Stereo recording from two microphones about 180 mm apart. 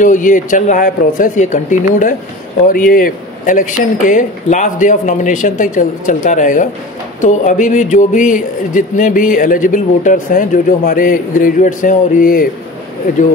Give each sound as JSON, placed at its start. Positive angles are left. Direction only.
{"t": 0.0, "sound": "speech", "side_deg": 45}